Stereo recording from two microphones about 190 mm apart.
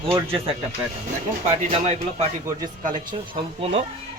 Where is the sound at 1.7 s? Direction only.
30° right (ahead or behind).